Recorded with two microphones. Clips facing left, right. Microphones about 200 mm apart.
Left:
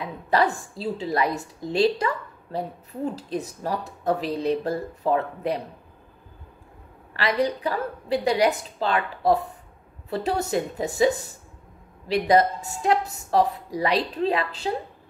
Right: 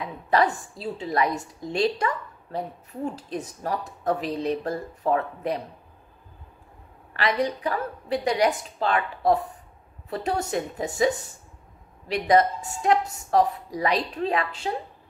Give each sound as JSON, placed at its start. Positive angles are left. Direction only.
{"t": 0.3, "sound": "a woman's voice", "side_deg": 30}
{"t": 7.2, "sound": "a woman's voice", "side_deg": 30}
{"t": 12.1, "sound": "a woman's voice", "side_deg": 30}